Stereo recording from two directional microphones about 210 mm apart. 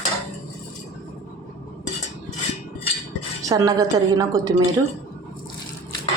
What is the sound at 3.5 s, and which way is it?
Speech, 15° right (ahead or behind).